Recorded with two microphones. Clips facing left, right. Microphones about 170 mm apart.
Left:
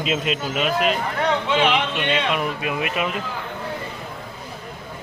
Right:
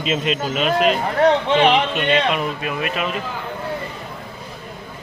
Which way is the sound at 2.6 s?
15° left (ahead or behind).